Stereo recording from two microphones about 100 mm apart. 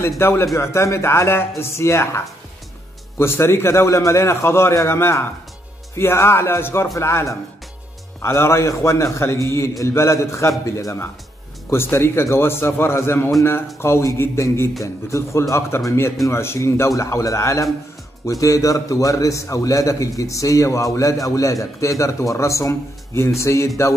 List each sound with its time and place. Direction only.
0.2 s a man's voice: 25° left (ahead or behind)